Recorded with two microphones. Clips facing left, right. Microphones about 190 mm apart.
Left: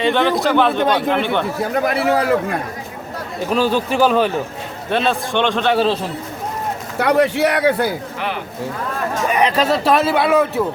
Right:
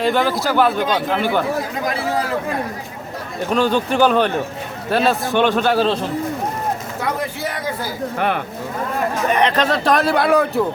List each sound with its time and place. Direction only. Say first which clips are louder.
0.0 s a man's voice: left 2 dB; 5° right (ahead or behind)
1.7 s a man's voice: left 5 dB; 65° left (ahead or behind)
3.4 s a man's voice: even; 5° left (ahead or behind)
7.0 s a man's voice: left 11 dB; 75° left (ahead or behind)
9.3 s a man's voice: left 1 dB; 10° left (ahead or behind)